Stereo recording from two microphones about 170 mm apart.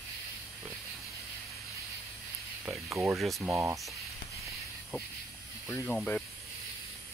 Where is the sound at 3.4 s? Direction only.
15° right (ahead or behind).